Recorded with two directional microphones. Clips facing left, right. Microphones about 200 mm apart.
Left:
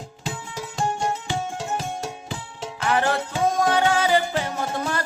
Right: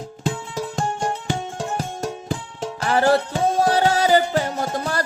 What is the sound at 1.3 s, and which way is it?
Music, 50° right (ahead or behind).